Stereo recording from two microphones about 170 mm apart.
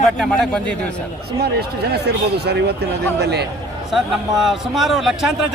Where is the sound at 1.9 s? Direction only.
75° right (ahead or behind).